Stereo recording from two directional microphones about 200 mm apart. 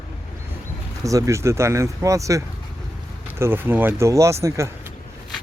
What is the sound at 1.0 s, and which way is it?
Speech, 15° right (ahead or behind).